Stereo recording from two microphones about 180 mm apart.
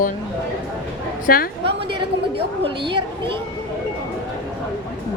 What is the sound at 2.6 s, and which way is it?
Speech, 30° right (ahead or behind).